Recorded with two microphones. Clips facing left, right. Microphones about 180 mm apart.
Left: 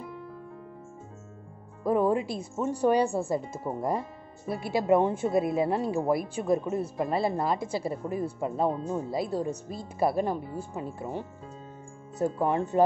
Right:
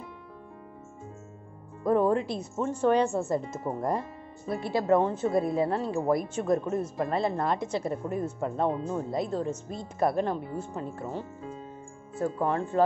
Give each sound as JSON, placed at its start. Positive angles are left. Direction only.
{"t": 1.8, "sound": "speech", "side_deg": 5}